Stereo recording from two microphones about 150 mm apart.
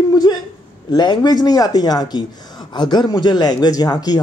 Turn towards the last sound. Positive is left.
turn(degrees=25)  # may be behind; listen again after turning